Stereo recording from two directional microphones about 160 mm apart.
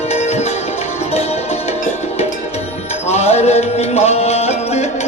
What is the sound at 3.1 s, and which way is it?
Music, 40° left (ahead or behind).